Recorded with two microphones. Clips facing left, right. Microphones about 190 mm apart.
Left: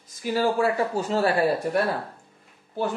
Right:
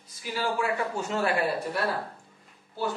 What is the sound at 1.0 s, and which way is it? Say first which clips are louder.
Speech: left 5 dB; 35° left (ahead or behind).